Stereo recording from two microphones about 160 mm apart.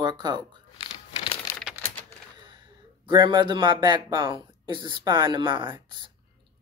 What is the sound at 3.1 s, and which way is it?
Speech, 30° right (ahead or behind).